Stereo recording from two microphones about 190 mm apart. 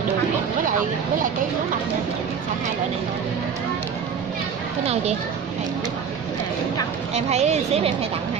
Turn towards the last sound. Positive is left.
turn(degrees=-35)  # may be behind; listen again after turning